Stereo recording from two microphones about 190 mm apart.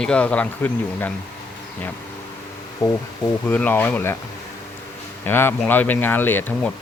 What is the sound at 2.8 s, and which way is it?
A man's voice, 15° left (ahead or behind).